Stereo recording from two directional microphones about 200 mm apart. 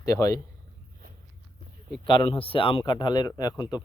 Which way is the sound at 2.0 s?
25° left (ahead or behind).